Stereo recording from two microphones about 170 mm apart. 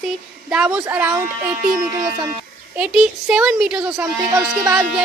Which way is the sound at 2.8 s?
5° right (ahead or behind).